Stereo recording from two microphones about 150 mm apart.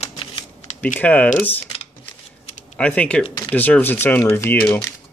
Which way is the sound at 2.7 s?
5° left (ahead or behind).